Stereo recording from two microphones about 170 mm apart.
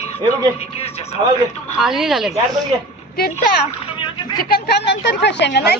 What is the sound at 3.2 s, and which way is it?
Speech, 65° left (ahead or behind).